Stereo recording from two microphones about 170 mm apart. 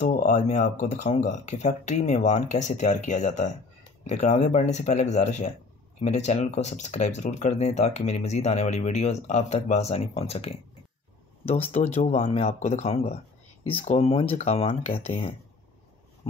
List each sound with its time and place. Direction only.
0.0 s speech: 50° left (ahead or behind)
11.6 s speech: 40° left (ahead or behind)